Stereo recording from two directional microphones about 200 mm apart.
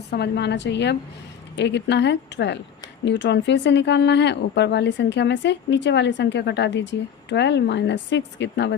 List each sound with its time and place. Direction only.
0.1 s speech: 55° left (ahead or behind)